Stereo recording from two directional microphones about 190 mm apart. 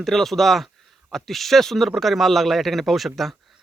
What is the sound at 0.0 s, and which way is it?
Speech, centre (ahead or behind).